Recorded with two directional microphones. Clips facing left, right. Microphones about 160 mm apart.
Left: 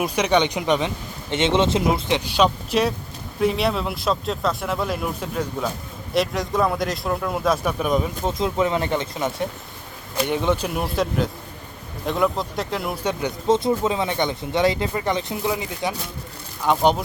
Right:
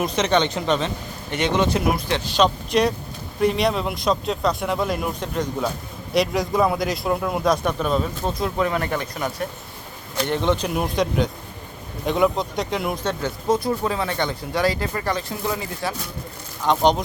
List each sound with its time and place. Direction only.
0.0 s a man's voice: 10° left (ahead or behind)
10.2 s a man's voice: 10° left (ahead or behind)
13.1 s a man's voice: 20° left (ahead or behind)